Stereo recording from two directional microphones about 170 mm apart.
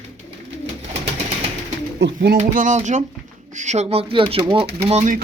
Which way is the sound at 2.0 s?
80° right.